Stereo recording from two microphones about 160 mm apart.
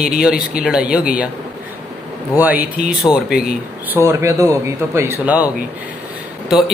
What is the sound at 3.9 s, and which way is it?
Speech, 20° right (ahead or behind).